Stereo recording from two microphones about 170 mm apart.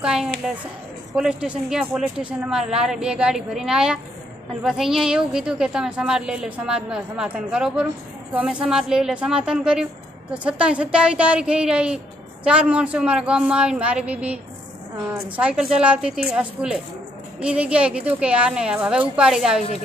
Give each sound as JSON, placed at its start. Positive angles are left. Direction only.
{"t": 0.0, "sound": "a woman's voice", "side_deg": -5}